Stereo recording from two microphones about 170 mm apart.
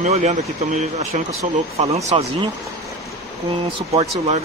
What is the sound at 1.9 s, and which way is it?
Speech, 40° right (ahead or behind).